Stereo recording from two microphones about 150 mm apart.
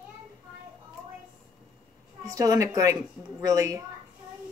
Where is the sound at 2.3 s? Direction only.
25° right (ahead or behind).